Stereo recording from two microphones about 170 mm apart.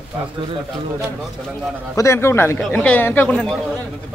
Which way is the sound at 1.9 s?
15° left (ahead or behind).